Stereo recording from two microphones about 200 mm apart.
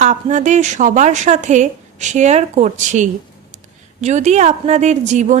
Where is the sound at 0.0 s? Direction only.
35° right (ahead or behind).